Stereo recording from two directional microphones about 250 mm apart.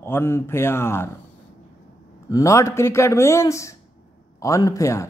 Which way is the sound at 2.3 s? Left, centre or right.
Centre.